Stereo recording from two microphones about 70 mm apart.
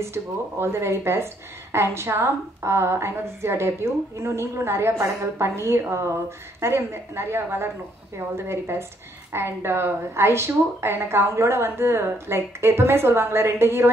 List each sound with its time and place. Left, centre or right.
0.0 s a woman's voice: right